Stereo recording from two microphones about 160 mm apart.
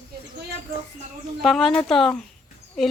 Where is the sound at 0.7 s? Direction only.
70° right (ahead or behind).